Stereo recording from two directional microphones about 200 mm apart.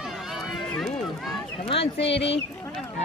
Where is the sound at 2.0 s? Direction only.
60° left (ahead or behind).